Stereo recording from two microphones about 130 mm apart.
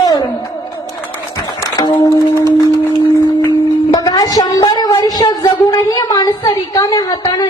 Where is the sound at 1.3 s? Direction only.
30° left (ahead or behind).